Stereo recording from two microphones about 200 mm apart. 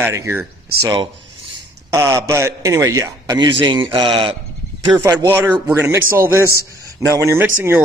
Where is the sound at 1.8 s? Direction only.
15° right (ahead or behind).